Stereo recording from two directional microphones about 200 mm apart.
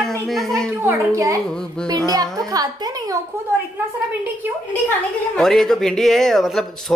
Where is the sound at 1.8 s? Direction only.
20° right (ahead or behind).